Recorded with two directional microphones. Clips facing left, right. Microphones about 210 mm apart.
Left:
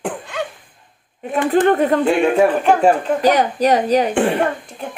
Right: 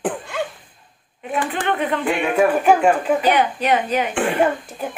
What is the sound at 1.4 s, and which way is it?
Speech, 40° left (ahead or behind).